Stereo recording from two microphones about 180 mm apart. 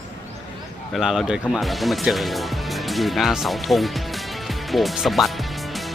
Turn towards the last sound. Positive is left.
turn(degrees=0)  # may be behind; listen again after turning